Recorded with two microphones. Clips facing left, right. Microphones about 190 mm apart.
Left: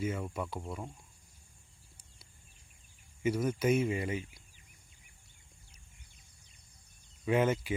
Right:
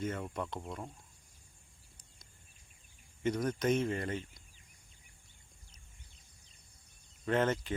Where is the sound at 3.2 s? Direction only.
5° left (ahead or behind).